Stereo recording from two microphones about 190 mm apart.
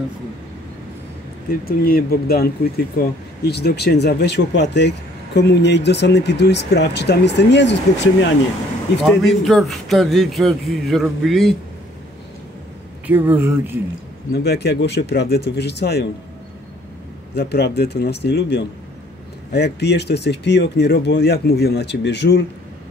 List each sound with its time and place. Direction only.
1.5 s speech: 50° left (ahead or behind); by 8.3 s 65° left (ahead or behind)
9.0 s a man's voice: centre (ahead or behind)
13.0 s speech: 10° right (ahead or behind)
14.3 s speech: 60° left (ahead or behind)
17.3 s speech: 60° left (ahead or behind)